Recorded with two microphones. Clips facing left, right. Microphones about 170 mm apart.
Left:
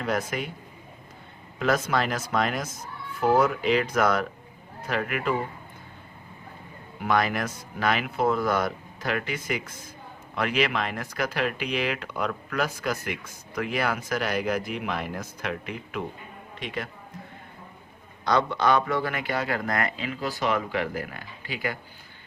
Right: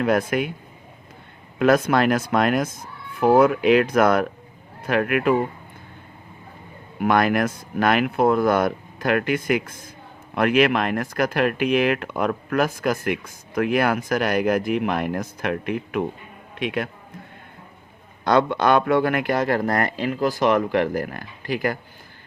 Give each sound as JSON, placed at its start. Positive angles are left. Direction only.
{"t": 0.0, "sound": "speech", "side_deg": -55}
{"t": 1.5, "sound": "speech", "side_deg": -55}
{"t": 7.0, "sound": "speech", "side_deg": -55}
{"t": 18.3, "sound": "speech", "side_deg": -55}